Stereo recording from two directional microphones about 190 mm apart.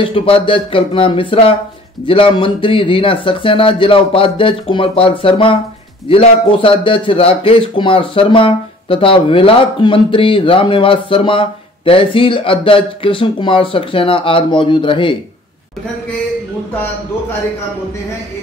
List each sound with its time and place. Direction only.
0.0 s a man's voice: 30° left (ahead or behind)